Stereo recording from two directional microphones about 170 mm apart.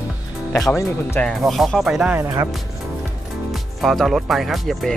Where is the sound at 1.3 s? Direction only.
Centre (ahead or behind).